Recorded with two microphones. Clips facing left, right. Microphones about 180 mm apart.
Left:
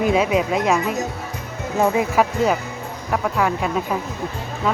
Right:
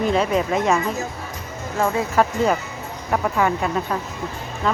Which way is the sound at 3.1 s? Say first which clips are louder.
Right 1 dB; centre (ahead or behind).